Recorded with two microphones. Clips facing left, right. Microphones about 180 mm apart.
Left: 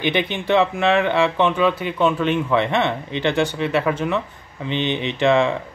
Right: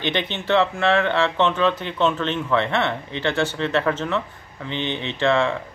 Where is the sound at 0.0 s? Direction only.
10° left (ahead or behind).